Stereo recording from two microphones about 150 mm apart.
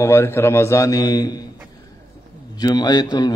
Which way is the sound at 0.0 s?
15° left (ahead or behind).